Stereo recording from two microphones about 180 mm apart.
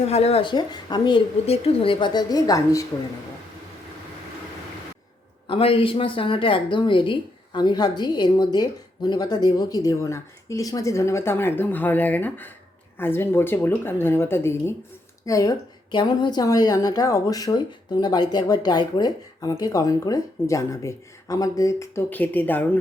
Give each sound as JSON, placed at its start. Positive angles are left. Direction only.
{"t": 0.0, "sound": "speech", "side_deg": 35}
{"t": 5.5, "sound": "a woman's voice", "side_deg": 30}